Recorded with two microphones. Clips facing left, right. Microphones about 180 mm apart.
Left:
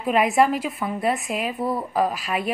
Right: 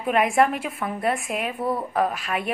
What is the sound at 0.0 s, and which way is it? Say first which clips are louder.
Speech: left 1 dB; centre (ahead or behind).